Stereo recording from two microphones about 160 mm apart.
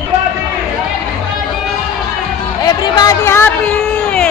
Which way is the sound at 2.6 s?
25° left (ahead or behind).